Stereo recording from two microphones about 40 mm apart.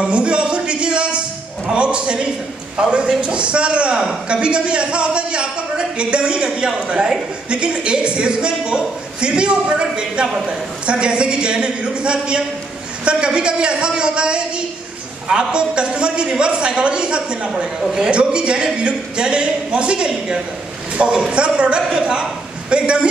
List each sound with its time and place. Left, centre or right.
0.0 s a sound: right
1.7 s a man's voice: right
17.7 s a woman's voice: centre
18.1 s a man's voice: right
21.8 s a woman's voice: centre
22.7 s a man's voice: right